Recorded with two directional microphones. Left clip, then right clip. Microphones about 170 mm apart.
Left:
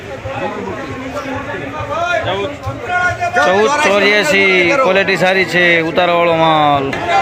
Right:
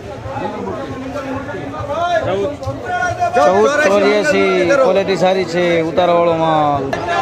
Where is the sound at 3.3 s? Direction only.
15° right (ahead or behind).